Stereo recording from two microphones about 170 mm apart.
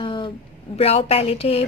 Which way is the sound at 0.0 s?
25° left (ahead or behind).